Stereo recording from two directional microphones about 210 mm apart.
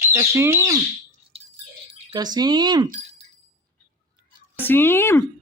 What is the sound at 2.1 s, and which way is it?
Speech, 20° right (ahead or behind).